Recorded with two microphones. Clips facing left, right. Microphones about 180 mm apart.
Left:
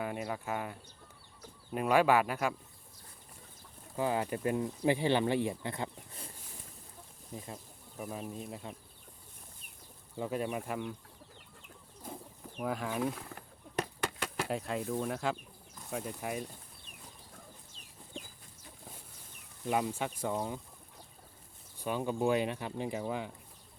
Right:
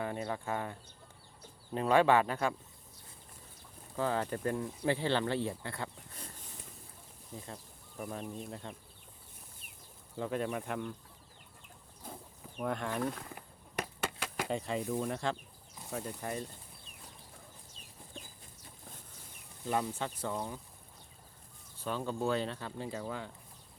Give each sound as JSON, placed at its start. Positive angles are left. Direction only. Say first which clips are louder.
{"t": 0.3, "sound": "speech", "louder": "even", "side_deg": 10}
{"t": 3.9, "sound": "speech", "louder": "left 1 dB", "side_deg": 15}
{"t": 7.9, "sound": "speech", "louder": "even", "side_deg": 5}
{"t": 10.2, "sound": "speech", "louder": "even", "side_deg": 5}
{"t": 12.5, "sound": "speech", "louder": "even", "side_deg": 5}
{"t": 13.3, "sound": "a sound", "louder": "left 4 dB", "side_deg": -10}
{"t": 14.5, "sound": "speech", "louder": "right 1 dB", "side_deg": 0}
{"t": 19.6, "sound": "speech", "louder": "left 2 dB", "side_deg": 15}
{"t": 21.8, "sound": "speech", "louder": "left 3 dB", "side_deg": 15}